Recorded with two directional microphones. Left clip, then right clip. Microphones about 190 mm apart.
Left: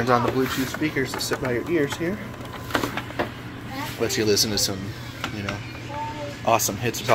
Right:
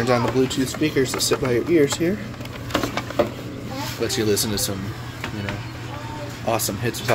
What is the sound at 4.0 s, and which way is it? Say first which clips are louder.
Speech: even; 10° right (ahead or behind).